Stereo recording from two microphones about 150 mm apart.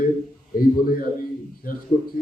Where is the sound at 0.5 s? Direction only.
80° left.